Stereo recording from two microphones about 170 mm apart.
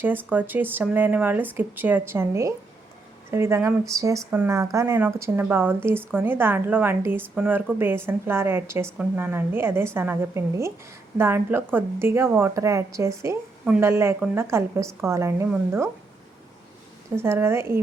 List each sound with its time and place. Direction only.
0.0 s speech: 10° right (ahead or behind)
17.2 s speech: 15° right (ahead or behind)